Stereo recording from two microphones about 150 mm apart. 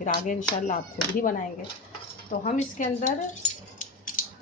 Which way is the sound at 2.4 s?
50° left (ahead or behind).